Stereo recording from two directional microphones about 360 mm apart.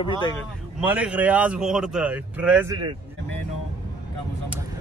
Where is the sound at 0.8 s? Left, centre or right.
Centre.